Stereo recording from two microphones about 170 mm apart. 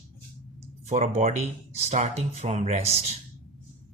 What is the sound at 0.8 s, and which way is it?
Speech, 40° right (ahead or behind).